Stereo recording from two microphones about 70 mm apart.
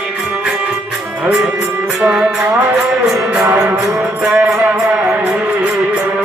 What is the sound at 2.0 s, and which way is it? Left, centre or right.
Music, centre.